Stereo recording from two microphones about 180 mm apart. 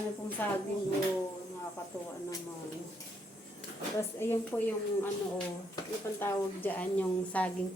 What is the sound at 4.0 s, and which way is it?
A woman's voice, 10° left (ahead or behind).